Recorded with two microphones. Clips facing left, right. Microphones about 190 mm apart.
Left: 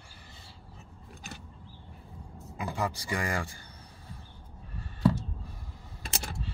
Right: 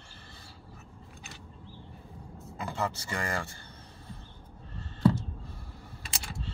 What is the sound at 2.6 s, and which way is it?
Speech, 10° left (ahead or behind).